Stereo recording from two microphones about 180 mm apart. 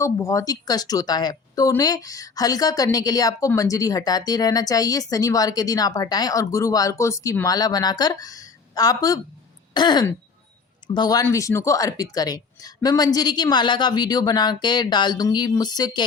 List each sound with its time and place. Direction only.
0.0 s speech: 15° left (ahead or behind)